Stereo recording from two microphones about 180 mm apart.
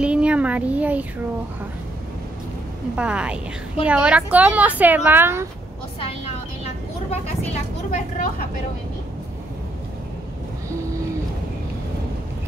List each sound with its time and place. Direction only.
0.0 s a sound: 5° right (ahead or behind)
3.0 s a woman's voice: 5° right (ahead or behind)
7.9 s speech: 50° left (ahead or behind)